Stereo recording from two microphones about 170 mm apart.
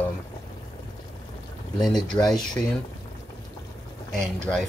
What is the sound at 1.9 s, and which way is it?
Speech, 25° left (ahead or behind).